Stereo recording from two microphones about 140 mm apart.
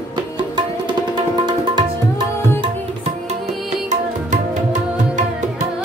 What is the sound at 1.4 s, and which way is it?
Tabla, 30° right (ahead or behind).